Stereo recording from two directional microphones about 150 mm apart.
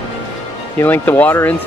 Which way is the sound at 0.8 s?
15° left (ahead or behind).